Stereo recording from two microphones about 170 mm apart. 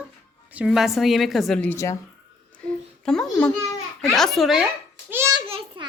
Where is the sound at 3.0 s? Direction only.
5° left (ahead or behind).